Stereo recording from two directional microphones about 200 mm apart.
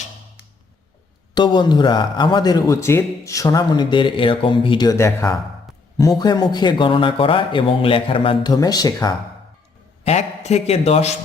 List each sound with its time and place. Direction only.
1.3 s a man's voice: 20° left (ahead or behind)
10.0 s a man's voice: 35° left (ahead or behind)